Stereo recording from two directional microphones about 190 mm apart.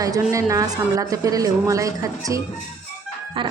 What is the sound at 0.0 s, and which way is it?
A woman's voice, 15° right (ahead or behind).